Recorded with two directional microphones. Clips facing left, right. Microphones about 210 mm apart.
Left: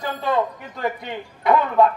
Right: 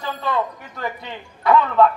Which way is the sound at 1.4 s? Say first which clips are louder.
Right 1 dB; 20° left (ahead or behind).